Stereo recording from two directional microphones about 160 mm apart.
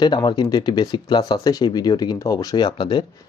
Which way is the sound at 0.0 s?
30° left (ahead or behind).